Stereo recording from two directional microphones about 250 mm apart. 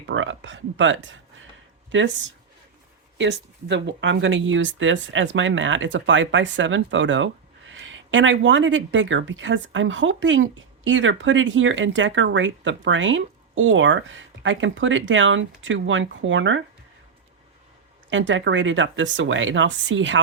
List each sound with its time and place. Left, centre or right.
0.1 s speech: right
18.1 s speech: right